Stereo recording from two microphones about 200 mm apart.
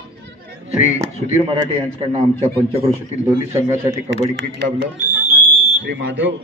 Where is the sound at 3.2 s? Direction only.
10° right (ahead or behind).